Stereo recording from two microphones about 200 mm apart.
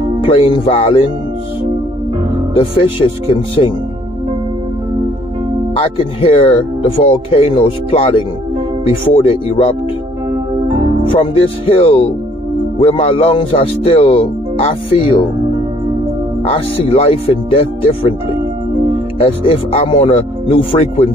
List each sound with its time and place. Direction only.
0.2 s speech: 25° left (ahead or behind)
2.5 s speech: 25° left (ahead or behind)
5.8 s speech: 25° left (ahead or behind)
9.1 s speech: 30° left (ahead or behind)
11.1 s speech: 25° left (ahead or behind)
16.4 s speech: 30° left (ahead or behind)
19.1 s speech: 30° left (ahead or behind)